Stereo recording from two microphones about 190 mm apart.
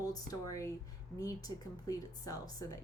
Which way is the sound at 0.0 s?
20° left (ahead or behind).